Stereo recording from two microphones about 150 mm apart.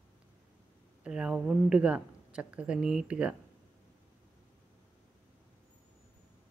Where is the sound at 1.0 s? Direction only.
5° right (ahead or behind).